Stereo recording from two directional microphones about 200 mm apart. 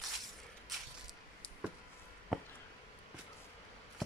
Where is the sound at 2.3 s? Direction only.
Centre (ahead or behind).